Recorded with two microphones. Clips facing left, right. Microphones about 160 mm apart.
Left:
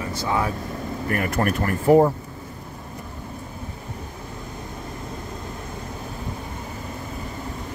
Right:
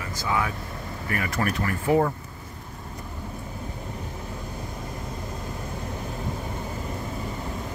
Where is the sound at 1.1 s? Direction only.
55° left (ahead or behind).